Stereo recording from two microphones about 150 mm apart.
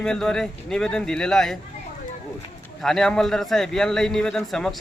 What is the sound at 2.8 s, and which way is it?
A man's voice, 5° left (ahead or behind).